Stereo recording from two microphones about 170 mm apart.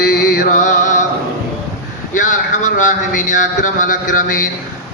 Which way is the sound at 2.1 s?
45° left (ahead or behind).